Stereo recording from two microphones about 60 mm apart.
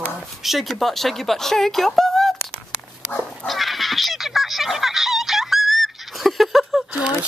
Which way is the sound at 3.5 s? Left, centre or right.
Centre.